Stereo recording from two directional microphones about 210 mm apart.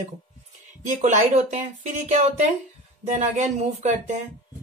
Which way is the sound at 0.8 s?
35° right (ahead or behind).